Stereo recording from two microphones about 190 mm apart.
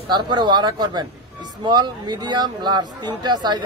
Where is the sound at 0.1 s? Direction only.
25° right (ahead or behind).